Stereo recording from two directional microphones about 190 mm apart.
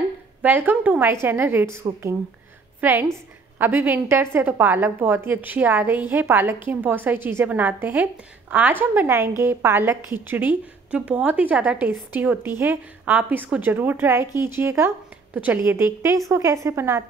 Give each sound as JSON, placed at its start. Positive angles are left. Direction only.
{"t": 0.4, "sound": "a woman's voice", "side_deg": -10}